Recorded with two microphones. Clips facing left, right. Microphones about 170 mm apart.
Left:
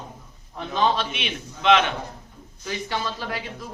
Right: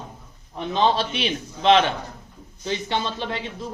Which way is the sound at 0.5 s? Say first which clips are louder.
Right 2 dB; 25° right (ahead or behind).